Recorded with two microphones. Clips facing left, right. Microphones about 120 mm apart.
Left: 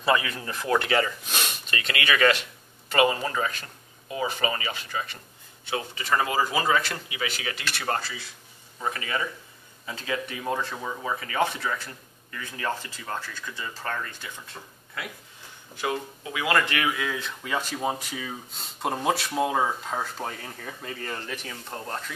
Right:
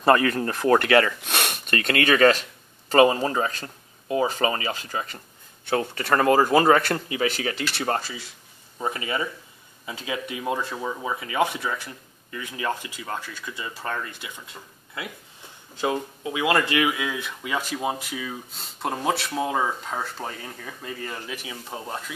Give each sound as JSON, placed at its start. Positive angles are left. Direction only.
{"t": 0.0, "sound": "speech", "side_deg": -50}
{"t": 5.7, "sound": "speech", "side_deg": -55}
{"t": 15.7, "sound": "speech", "side_deg": -25}